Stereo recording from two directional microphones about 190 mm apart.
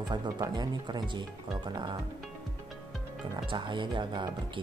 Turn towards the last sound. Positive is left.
turn(degrees=-25)  # may be behind; listen again after turning